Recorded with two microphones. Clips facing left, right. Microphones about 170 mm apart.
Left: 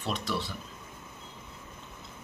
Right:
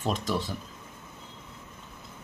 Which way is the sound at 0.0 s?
45° right (ahead or behind).